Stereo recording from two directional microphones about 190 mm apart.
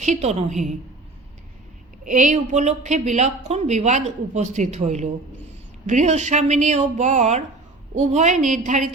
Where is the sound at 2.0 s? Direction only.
40° right (ahead or behind).